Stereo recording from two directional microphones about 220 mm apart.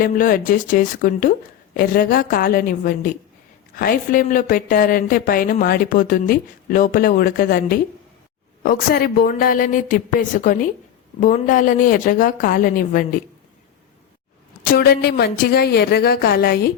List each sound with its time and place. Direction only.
0.0 s a woman's voice: 40° left (ahead or behind)
14.6 s a woman's voice: 45° left (ahead or behind)